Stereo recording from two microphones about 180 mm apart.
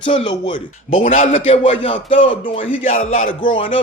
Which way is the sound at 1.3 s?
30° left (ahead or behind).